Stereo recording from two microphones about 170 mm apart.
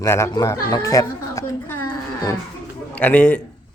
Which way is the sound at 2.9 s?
10° left (ahead or behind).